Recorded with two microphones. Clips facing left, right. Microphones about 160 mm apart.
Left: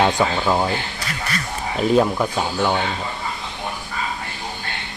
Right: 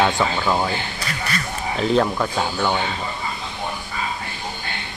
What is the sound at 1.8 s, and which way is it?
Speech, 10° left (ahead or behind).